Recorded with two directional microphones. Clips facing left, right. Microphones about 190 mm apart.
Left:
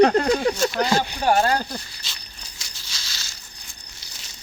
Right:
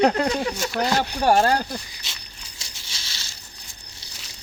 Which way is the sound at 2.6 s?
30° right (ahead or behind).